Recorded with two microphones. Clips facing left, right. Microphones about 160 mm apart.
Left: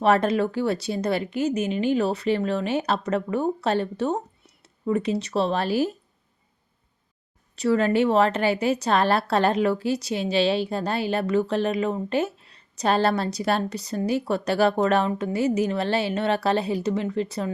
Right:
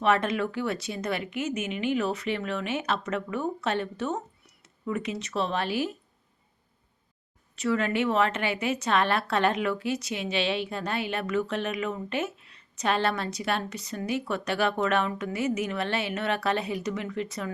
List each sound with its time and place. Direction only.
0.0 s a woman's voice: 35° left (ahead or behind)
7.5 s a woman's voice: 35° left (ahead or behind)